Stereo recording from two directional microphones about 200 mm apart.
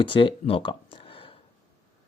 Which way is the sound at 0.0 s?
25° left (ahead or behind).